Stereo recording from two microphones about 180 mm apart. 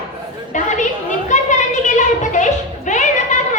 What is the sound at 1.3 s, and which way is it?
Music, 40° left (ahead or behind).